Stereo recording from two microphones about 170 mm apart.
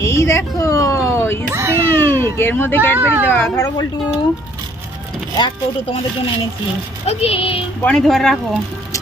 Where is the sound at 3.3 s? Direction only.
15° left (ahead or behind).